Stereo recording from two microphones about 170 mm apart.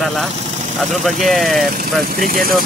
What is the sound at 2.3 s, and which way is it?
Speech, 55° right (ahead or behind).